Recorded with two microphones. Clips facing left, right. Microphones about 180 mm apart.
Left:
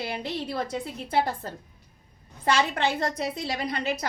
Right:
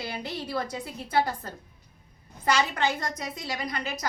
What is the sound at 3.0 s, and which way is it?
Speech, 30° left (ahead or behind).